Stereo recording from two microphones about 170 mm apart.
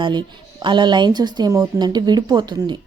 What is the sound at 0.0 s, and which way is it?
Speech, 25° right (ahead or behind).